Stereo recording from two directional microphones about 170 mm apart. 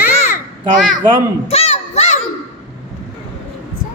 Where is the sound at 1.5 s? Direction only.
40° left (ahead or behind).